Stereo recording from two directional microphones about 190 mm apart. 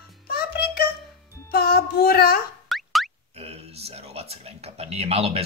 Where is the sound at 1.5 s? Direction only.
55° left (ahead or behind).